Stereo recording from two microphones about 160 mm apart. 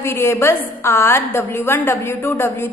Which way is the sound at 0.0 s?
15° left (ahead or behind).